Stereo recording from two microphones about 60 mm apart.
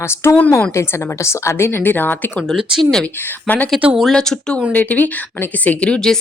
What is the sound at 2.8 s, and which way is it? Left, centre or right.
Speech, centre.